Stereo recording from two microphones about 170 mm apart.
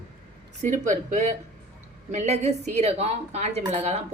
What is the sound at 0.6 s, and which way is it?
A woman's voice, 45° right (ahead or behind).